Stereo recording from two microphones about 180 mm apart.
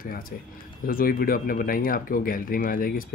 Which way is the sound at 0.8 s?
55° left (ahead or behind).